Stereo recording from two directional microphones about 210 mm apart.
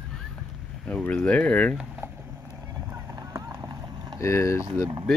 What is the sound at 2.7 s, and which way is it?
Boat, 15° right (ahead or behind).